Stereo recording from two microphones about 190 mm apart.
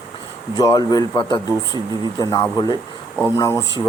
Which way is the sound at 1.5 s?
20° right (ahead or behind).